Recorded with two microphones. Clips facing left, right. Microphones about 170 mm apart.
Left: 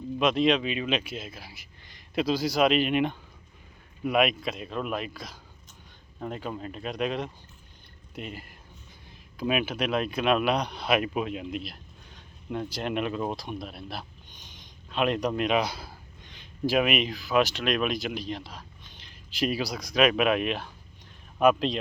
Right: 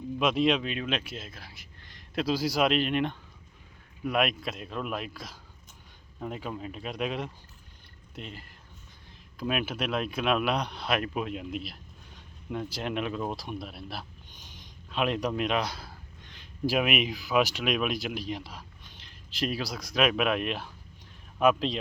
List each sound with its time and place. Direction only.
0.2 s speech: 5° right (ahead or behind)
8.1 s speech: 5° left (ahead or behind)